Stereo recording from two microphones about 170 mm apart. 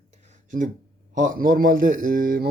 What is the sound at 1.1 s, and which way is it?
Speech, 50° right (ahead or behind).